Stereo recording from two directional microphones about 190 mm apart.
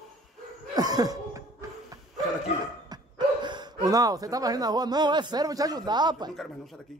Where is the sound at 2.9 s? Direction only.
25° right (ahead or behind).